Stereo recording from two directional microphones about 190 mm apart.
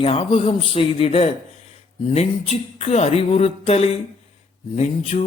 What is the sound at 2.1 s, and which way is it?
Speech, 35° left (ahead or behind).